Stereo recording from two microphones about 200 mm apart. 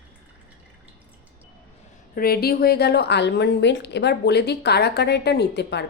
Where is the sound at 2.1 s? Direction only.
50° left (ahead or behind).